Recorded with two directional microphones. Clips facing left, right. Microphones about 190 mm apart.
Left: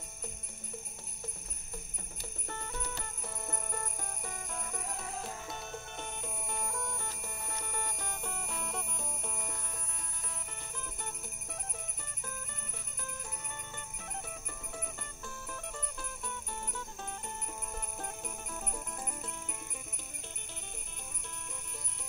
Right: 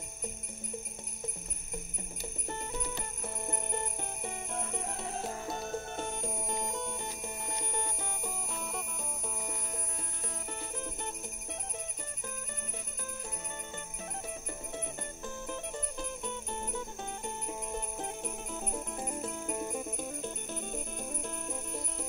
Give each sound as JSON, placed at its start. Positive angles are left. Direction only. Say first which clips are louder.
{"t": 2.4, "sound": "music", "louder": "right 3 dB", "side_deg": -20}
{"t": 5.5, "sound": "music", "louder": "right 7 dB", "side_deg": -40}
{"t": 8.5, "sound": "music", "louder": "right 1 dB", "side_deg": 0}
{"t": 14.7, "sound": "music", "louder": "right 3 dB", "side_deg": -25}